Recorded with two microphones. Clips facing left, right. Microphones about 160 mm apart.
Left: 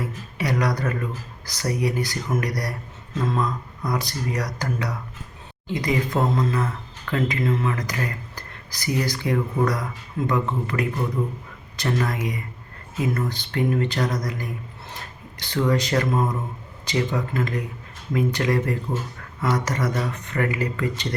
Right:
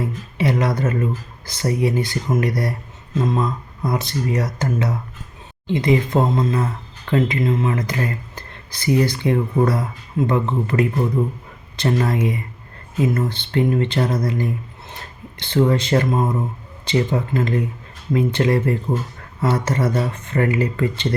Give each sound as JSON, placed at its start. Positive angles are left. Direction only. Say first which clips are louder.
{"t": 0.3, "sound": "speech", "louder": "right 4 dB", "side_deg": -25}